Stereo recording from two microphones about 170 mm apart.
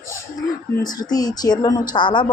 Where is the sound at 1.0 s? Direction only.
25° left (ahead or behind).